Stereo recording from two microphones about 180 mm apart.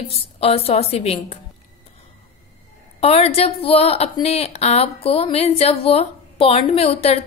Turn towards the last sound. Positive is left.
turn(degrees=35)  # may be behind; listen again after turning